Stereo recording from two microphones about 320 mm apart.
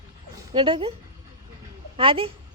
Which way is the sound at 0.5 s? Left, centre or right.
Centre.